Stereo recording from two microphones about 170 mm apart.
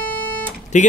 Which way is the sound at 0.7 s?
45° left (ahead or behind).